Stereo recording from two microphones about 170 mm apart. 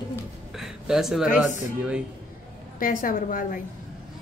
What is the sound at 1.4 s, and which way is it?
Speech, 5° right (ahead or behind).